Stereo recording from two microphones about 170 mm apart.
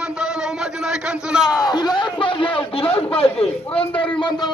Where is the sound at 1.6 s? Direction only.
25° left (ahead or behind).